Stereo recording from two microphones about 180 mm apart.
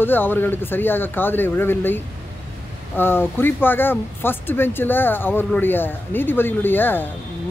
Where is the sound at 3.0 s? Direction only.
10° left (ahead or behind).